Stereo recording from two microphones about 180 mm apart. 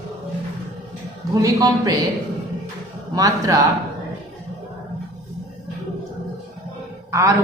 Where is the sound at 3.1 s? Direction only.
20° right (ahead or behind).